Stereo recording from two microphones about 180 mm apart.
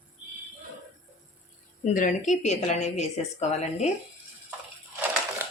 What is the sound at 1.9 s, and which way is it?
Speech, 45° left (ahead or behind).